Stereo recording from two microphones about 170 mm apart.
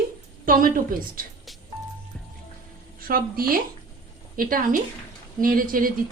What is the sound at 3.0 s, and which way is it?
A woman's voice, 60° right (ahead or behind).